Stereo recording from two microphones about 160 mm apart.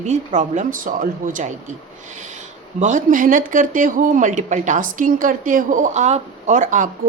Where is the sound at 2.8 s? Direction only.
50° right (ahead or behind).